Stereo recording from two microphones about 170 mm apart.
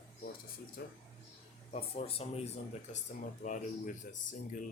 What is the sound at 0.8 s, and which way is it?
Speech, 65° left (ahead or behind).